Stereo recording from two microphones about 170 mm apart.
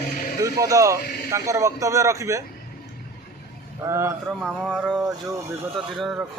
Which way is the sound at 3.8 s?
15° right (ahead or behind).